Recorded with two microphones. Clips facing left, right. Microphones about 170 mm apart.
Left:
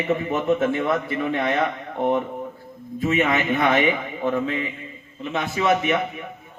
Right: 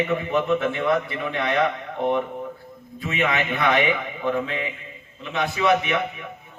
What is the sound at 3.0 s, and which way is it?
Speech, 45° left (ahead or behind).